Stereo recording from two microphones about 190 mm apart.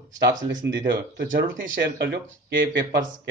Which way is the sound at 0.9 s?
65° right (ahead or behind).